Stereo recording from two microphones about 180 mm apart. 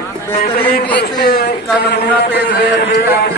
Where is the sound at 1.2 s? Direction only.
65° left (ahead or behind).